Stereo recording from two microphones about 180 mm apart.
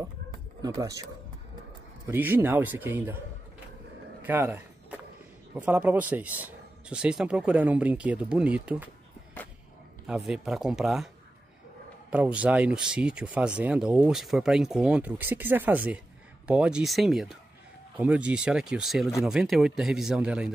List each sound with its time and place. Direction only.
0.6 s speech: 20° right (ahead or behind)
2.0 s speech: 10° right (ahead or behind)
4.2 s speech: 10° right (ahead or behind)
10.0 s speech: 5° right (ahead or behind)
12.1 s speech: 5° right (ahead or behind)